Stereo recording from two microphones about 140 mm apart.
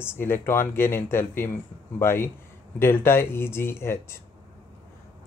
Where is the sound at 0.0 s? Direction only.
15° left (ahead or behind).